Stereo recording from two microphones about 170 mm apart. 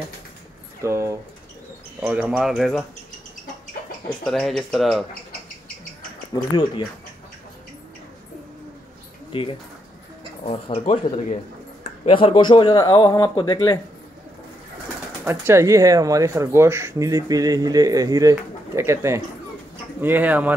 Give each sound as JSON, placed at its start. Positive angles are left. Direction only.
{"t": 0.8, "sound": "speech", "side_deg": -15}
{"t": 4.2, "sound": "speech", "side_deg": 0}
{"t": 6.3, "sound": "speech", "side_deg": 25}
{"t": 9.3, "sound": "speech", "side_deg": 30}
{"t": 15.2, "sound": "speech", "side_deg": -15}